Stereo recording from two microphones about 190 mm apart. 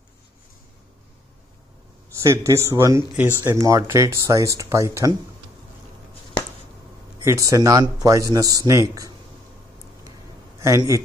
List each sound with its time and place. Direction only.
2.1 s speech: 15° right (ahead or behind)
7.2 s speech: 15° right (ahead or behind)
10.6 s a man's voice: 15° right (ahead or behind)